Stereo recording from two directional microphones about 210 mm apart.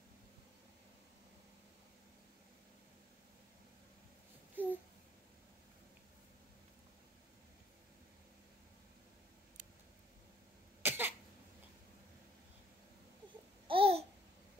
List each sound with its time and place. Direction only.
4.6 s babbling: 10° right (ahead or behind)
10.8 s cough: 10° right (ahead or behind)
13.7 s babbling: 25° right (ahead or behind)